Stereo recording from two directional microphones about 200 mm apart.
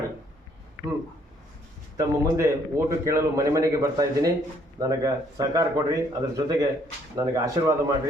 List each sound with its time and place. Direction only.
2.0 s a man's voice: 15° right (ahead or behind)